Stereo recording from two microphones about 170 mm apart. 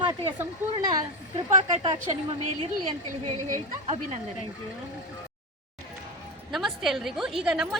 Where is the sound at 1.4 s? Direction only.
30° right (ahead or behind).